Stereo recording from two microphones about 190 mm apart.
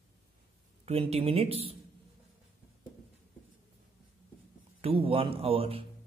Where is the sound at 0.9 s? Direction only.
30° right (ahead or behind).